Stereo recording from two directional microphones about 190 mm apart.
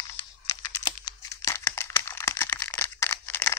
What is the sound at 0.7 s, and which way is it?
Computer keyboard, 15° left (ahead or behind).